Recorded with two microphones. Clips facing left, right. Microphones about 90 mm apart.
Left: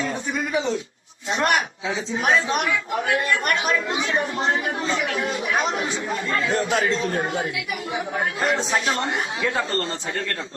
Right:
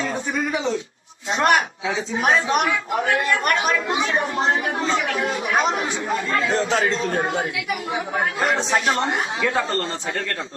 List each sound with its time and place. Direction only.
1.3 s a woman's voice: 35° right (ahead or behind)